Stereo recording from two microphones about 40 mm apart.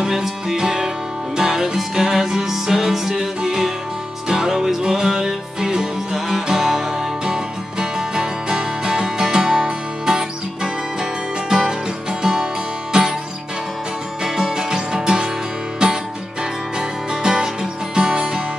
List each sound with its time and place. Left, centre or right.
0.0 s music: centre
7.8 s music: centre
14.2 s music: centre
17.1 s music: centre